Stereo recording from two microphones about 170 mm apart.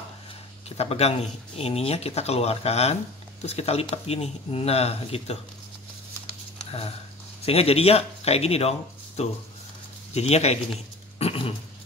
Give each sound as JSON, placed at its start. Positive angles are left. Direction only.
{"t": 0.7, "sound": "speech", "side_deg": 40}
{"t": 7.4, "sound": "speech", "side_deg": 35}
{"t": 11.1, "sound": "a sound", "side_deg": 35}